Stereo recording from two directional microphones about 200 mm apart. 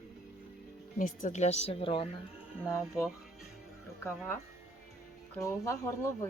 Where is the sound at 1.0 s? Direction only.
40° left (ahead or behind).